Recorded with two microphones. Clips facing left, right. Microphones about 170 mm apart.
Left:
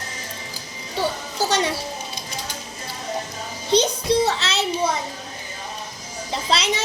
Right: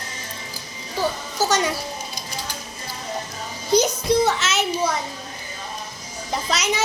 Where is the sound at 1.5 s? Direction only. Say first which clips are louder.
Even; 30° left (ahead or behind).